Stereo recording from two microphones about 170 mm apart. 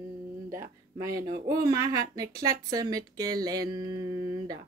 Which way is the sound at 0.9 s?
20° right (ahead or behind).